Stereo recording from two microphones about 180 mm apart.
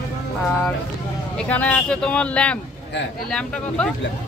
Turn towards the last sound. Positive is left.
turn(degrees=5)  # may be behind; listen again after turning